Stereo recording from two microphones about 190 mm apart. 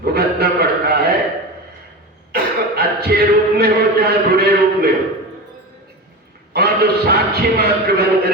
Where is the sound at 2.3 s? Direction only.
55° right (ahead or behind).